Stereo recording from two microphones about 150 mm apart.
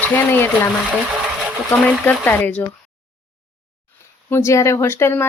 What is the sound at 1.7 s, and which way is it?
Speech, 5° left (ahead or behind).